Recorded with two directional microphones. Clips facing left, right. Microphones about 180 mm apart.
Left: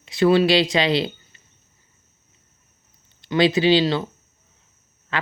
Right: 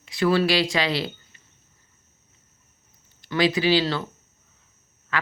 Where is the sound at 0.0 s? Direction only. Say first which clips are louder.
Left 4 dB; 25° left (ahead or behind).